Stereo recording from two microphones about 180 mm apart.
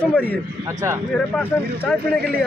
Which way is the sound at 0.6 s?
15° right (ahead or behind).